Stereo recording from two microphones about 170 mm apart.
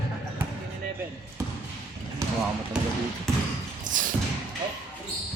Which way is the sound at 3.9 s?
50° right (ahead or behind).